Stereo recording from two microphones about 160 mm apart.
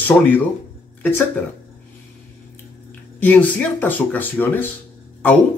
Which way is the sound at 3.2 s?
10° left (ahead or behind).